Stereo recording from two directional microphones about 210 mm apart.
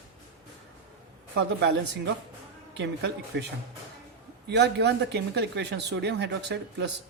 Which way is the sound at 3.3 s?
55° right (ahead or behind).